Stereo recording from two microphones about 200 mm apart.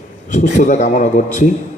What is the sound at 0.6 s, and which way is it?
Speech, 40° left (ahead or behind).